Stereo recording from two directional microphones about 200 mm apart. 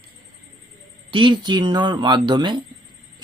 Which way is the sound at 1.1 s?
25° right (ahead or behind).